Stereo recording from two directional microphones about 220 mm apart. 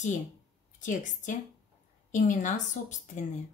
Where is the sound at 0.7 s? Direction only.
35° left (ahead or behind).